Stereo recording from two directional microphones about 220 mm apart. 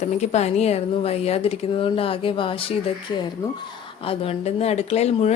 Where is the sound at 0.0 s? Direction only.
30° left (ahead or behind).